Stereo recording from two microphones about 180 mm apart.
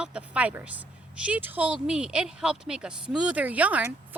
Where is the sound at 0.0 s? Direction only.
5° right (ahead or behind).